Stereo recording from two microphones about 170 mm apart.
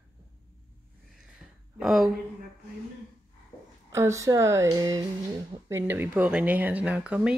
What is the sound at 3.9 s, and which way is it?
Speech, 15° right (ahead or behind).